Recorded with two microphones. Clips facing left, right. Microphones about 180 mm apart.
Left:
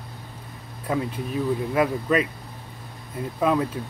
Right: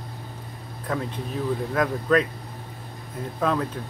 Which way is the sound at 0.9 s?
10° left (ahead or behind).